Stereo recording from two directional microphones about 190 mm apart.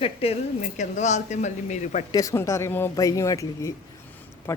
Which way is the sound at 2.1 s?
15° left (ahead or behind).